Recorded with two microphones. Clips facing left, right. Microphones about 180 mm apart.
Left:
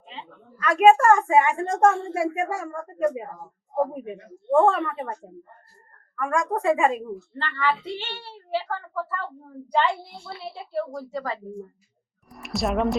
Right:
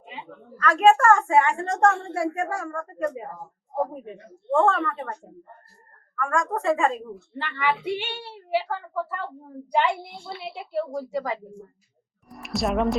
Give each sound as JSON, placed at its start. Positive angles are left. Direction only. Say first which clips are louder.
{"t": 0.6, "sound": "speech", "louder": "left 2 dB", "side_deg": 15}
{"t": 1.7, "sound": "a woman's voice", "louder": "left 1 dB", "side_deg": 0}
{"t": 2.1, "sound": "speech", "louder": "left 1 dB", "side_deg": 15}
{"t": 4.6, "sound": "speech", "louder": "right 1 dB", "side_deg": 15}
{"t": 6.1, "sound": "speech", "louder": "left 1 dB", "side_deg": 15}
{"t": 7.3, "sound": "a child's voice", "louder": "even", "side_deg": -10}
{"t": 12.3, "sound": "speech", "louder": "even", "side_deg": 0}